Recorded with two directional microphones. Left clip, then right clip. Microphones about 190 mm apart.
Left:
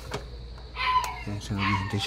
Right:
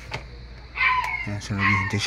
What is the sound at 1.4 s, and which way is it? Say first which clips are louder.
Speech: right 6 dB; 15° right (ahead or behind).